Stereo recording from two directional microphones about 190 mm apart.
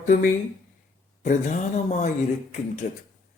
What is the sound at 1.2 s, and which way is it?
Speech, 40° left (ahead or behind).